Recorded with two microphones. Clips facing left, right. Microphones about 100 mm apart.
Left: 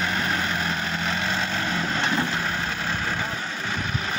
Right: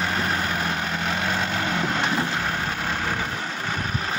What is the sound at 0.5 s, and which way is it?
Vehicle, 50° right (ahead or behind).